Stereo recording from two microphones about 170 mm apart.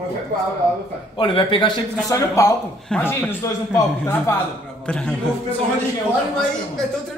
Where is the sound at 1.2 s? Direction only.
30° left (ahead or behind).